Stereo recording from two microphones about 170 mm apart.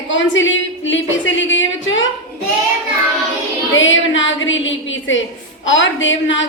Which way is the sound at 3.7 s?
90° left.